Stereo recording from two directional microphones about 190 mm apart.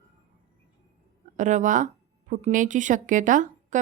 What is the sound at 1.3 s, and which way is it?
A woman's voice, 40° right (ahead or behind).